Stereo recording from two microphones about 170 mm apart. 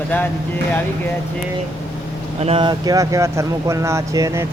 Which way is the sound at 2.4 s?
35° right (ahead or behind).